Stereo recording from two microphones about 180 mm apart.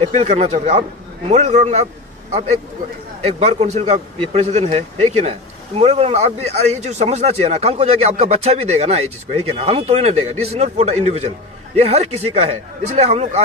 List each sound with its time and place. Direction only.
0.1 s speech: 35° right (ahead or behind)
3.3 s speech: 35° right (ahead or behind)